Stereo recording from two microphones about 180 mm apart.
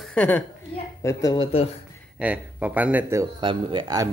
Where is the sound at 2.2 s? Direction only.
10° right (ahead or behind).